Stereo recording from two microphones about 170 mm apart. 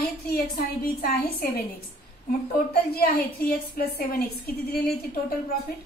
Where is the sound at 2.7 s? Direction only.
65° left (ahead or behind).